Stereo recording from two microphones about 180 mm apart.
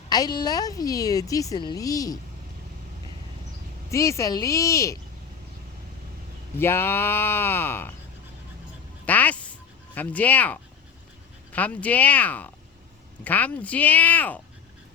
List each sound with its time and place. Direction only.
0.1 s a woman's voice: 20° left (ahead or behind)
3.9 s speech: 15° left (ahead or behind)
6.6 s speech: 10° left (ahead or behind)
9.0 s a sound: 10° left (ahead or behind)
11.5 s speech: 10° left (ahead or behind)